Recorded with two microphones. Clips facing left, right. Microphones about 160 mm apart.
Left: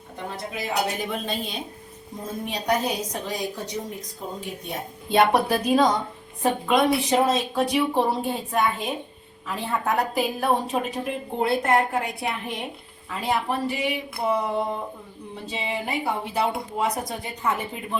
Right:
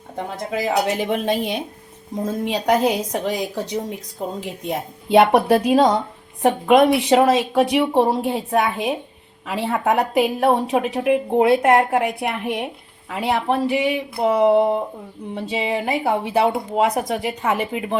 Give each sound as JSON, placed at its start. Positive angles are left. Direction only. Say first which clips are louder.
{"t": 0.5, "sound": "a woman's voice", "louder": "right 7 dB", "side_deg": -90}
{"t": 2.4, "sound": "a woman's voice", "louder": "right 6 dB", "side_deg": -90}
{"t": 15.4, "sound": "a woman's voice", "louder": "right 7 dB", "side_deg": -90}
{"t": 16.4, "sound": "a woman's voice", "louder": "right 6 dB", "side_deg": -60}